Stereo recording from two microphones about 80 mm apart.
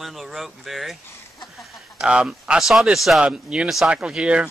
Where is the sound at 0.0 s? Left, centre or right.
Centre.